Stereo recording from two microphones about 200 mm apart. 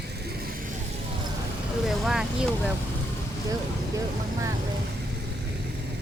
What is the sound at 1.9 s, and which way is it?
Vehicle, centre (ahead or behind).